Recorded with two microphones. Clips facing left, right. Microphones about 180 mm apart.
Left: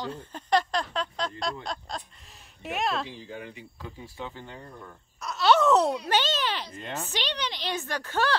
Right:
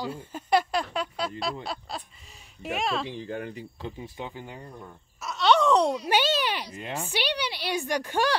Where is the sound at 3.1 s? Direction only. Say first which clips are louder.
Right 6 dB; 55° right (ahead or behind).